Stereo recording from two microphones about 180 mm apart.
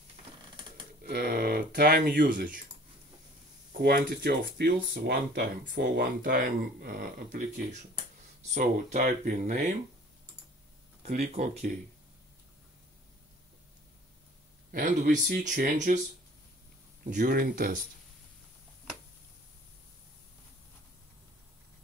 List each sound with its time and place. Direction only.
1.0 s speech: 60° right (ahead or behind)
3.8 s speech: 60° right (ahead or behind)
8.5 s speech: 45° right (ahead or behind)
11.0 s speech: 40° right (ahead or behind)
14.7 s speech: 45° right (ahead or behind)
17.0 s speech: 50° right (ahead or behind)